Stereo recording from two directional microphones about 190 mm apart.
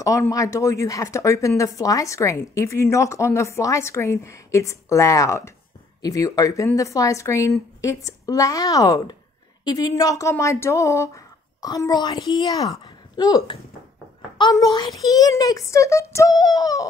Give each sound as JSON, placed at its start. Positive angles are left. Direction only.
{"t": 0.0, "sound": "speech", "side_deg": 15}